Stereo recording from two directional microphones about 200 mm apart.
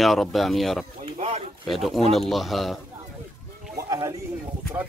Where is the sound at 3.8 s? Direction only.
15° right (ahead or behind).